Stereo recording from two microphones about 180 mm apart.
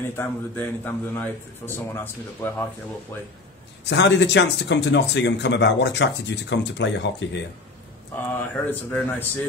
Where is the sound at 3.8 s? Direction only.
75° left (ahead or behind).